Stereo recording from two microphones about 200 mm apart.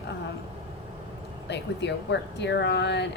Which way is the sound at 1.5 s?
60° left (ahead or behind).